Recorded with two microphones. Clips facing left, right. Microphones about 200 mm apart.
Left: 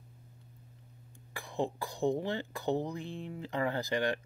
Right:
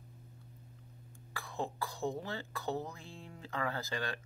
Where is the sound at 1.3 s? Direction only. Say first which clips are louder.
Left 5 dB; 15° left (ahead or behind).